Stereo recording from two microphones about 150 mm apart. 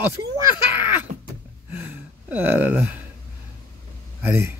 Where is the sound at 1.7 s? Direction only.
10° right (ahead or behind).